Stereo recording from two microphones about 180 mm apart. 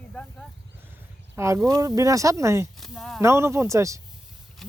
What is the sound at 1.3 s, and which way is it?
Speech, 15° right (ahead or behind).